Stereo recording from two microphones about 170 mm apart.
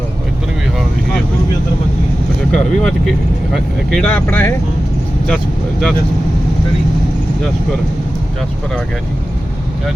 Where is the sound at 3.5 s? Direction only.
5° left (ahead or behind).